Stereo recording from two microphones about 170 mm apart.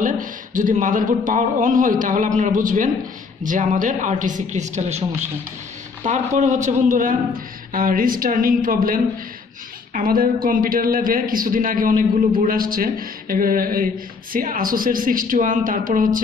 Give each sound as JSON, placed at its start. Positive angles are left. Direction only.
{"t": 0.0, "sound": "a man's voice", "side_deg": -50}